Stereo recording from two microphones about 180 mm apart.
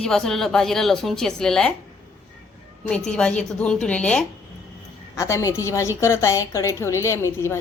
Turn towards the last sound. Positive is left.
turn(degrees=15)  # may be behind; listen again after turning